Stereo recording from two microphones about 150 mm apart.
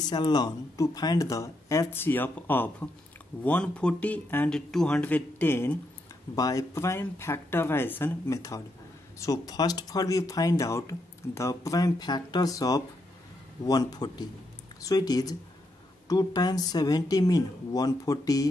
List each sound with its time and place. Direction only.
0.0 s speech: 25° left (ahead or behind)